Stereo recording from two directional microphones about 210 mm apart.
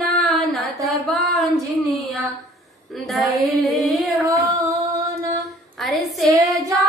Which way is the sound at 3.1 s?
Centre (ahead or behind).